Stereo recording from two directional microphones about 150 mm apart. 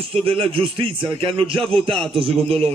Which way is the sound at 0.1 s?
40° right (ahead or behind).